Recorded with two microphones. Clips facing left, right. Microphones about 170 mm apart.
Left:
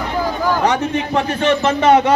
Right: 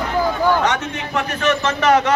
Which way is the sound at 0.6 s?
30° left (ahead or behind).